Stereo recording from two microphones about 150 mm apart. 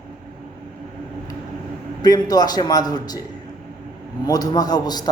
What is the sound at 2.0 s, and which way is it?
A man's voice, 25° left (ahead or behind).